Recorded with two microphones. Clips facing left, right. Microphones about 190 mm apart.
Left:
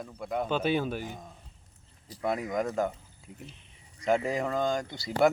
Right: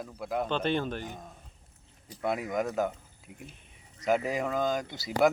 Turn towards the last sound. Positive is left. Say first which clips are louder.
# even
turn(degrees=0)  # may be behind; listen again after turning